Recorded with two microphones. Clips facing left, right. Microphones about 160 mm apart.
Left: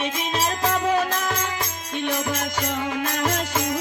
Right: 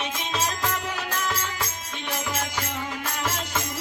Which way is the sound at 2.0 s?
55° left (ahead or behind).